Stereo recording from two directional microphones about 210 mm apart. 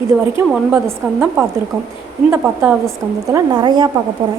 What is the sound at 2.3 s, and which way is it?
A woman's voice, 10° right (ahead or behind).